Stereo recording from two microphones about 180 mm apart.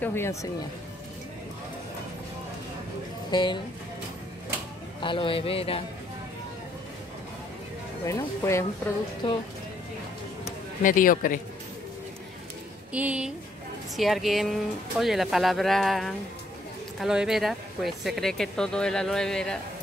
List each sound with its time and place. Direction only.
0.0 s speech: 15° left (ahead or behind)
3.3 s speech: 25° left (ahead or behind)
5.0 s a man's voice: 30° left (ahead or behind)
8.0 s speech: 15° left (ahead or behind)
10.4 s speech: 50° left (ahead or behind)
12.9 s speech: 5° right (ahead or behind)